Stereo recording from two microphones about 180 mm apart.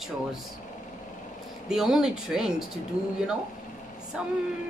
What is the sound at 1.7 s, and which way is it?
Speech, 5° right (ahead or behind).